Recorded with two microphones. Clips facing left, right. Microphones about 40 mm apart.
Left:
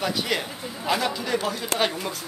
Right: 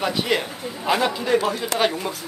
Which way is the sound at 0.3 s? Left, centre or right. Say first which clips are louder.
Right 4 dB; centre.